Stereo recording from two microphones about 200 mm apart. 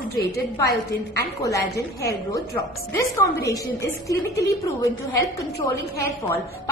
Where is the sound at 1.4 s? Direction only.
15° left (ahead or behind).